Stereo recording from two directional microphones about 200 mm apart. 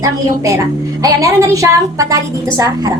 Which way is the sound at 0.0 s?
15° right (ahead or behind).